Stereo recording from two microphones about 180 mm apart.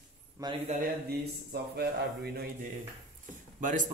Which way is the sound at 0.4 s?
15° right (ahead or behind).